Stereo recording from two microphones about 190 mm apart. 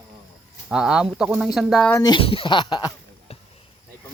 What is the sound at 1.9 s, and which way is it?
Speech, 15° left (ahead or behind).